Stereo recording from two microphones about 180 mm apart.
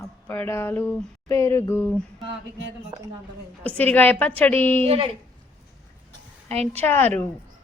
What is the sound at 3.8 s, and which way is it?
Speech, 10° left (ahead or behind).